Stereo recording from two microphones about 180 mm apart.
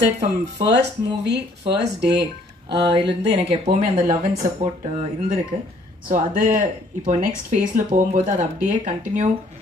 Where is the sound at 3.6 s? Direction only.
40° right (ahead or behind).